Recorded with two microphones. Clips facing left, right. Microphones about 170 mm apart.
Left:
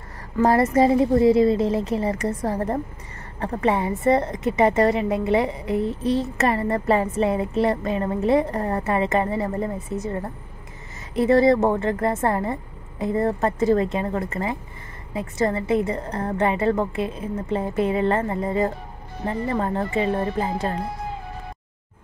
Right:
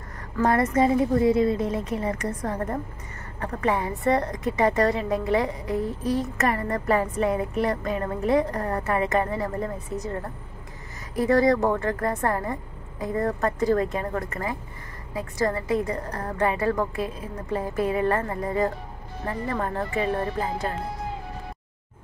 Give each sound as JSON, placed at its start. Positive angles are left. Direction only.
{"t": 0.4, "sound": "a woman's voice", "side_deg": 30}
{"t": 11.1, "sound": "a woman's voice", "side_deg": 25}